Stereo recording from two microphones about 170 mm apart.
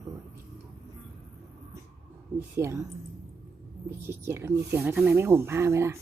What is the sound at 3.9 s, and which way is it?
Speech, 15° right (ahead or behind).